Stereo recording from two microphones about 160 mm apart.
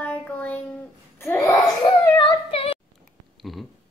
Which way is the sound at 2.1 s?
35° left (ahead or behind).